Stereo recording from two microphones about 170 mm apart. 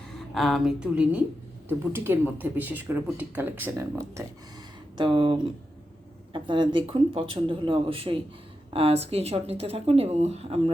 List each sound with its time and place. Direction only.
0.1 s speech: centre (ahead or behind); by 4.2 s 15° right (ahead or behind)
4.9 s speech: 30° right (ahead or behind)